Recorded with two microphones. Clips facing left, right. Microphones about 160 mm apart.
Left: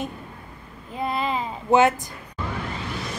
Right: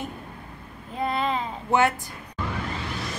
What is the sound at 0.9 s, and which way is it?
Babbling, centre (ahead or behind).